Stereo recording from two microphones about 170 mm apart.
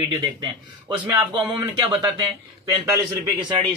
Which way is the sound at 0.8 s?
30° right (ahead or behind).